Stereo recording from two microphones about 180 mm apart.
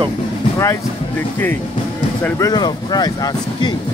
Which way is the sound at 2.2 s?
20° left (ahead or behind).